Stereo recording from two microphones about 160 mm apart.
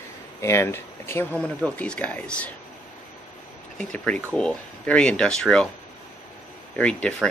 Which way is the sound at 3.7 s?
5° left (ahead or behind).